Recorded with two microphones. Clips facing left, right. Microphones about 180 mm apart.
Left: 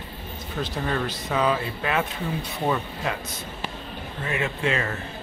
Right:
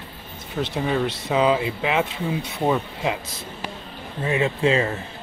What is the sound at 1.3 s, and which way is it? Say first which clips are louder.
Speech: right 4 dB; 20° right (ahead or behind).